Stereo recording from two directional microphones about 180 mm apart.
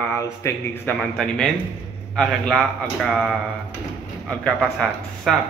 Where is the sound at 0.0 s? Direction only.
15° left (ahead or behind).